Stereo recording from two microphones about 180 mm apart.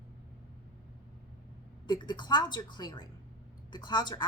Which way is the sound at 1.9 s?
25° left (ahead or behind).